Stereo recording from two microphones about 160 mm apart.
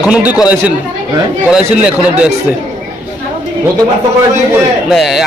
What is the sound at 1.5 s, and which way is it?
Speech, 5° right (ahead or behind).